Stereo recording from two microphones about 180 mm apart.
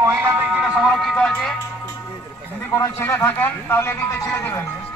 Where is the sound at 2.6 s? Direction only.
15° left (ahead or behind).